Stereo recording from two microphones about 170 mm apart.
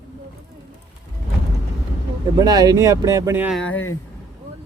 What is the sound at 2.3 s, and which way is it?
Speech, 20° right (ahead or behind).